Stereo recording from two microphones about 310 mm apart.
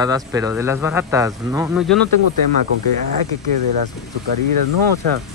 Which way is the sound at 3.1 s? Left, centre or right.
Right.